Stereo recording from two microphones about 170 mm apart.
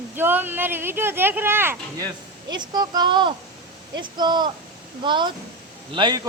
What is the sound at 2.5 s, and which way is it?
Speech, 25° right (ahead or behind).